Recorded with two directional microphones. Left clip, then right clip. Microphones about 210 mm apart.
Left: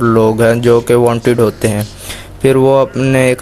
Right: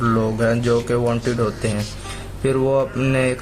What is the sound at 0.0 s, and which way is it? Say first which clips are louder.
Speech: left 10 dB; 40° left (ahead or behind).